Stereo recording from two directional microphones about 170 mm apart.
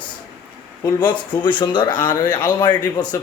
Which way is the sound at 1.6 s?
25° left (ahead or behind).